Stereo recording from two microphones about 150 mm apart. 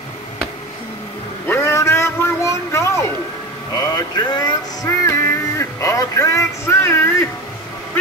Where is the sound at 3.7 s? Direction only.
25° left (ahead or behind).